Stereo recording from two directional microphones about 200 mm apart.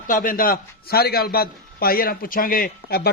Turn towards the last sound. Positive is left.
turn(degrees=50)  # may be behind; listen again after turning